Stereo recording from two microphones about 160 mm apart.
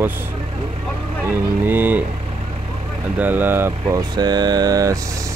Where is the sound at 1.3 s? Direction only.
15° right (ahead or behind).